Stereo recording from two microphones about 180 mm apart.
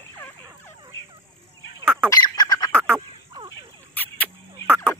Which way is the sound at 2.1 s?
20° left (ahead or behind).